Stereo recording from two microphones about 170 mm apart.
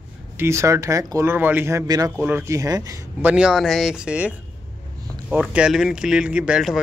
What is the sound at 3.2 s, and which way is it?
Speech, 5° right (ahead or behind).